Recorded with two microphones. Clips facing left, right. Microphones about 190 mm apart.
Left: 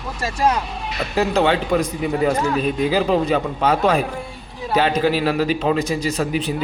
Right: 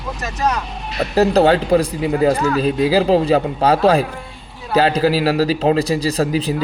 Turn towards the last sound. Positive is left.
turn(degrees=-35)  # may be behind; listen again after turning